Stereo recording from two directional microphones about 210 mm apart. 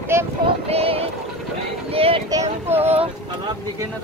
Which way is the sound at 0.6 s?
30° right (ahead or behind).